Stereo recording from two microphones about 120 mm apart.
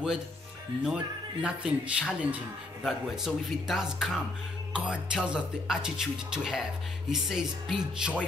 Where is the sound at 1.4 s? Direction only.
10° right (ahead or behind).